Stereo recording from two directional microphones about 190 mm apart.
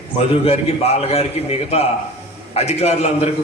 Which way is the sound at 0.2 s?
35° left (ahead or behind).